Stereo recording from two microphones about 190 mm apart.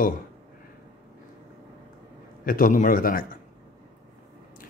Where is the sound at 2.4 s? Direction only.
50° left (ahead or behind).